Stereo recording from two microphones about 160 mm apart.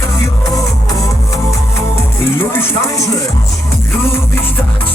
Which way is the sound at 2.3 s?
15° left (ahead or behind).